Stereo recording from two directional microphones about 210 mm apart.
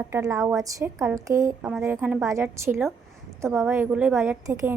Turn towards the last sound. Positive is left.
turn(degrees=-10)  # may be behind; listen again after turning